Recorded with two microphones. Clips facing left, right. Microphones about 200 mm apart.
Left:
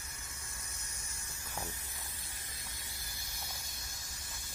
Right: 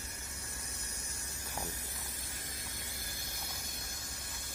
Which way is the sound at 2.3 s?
50° right (ahead or behind).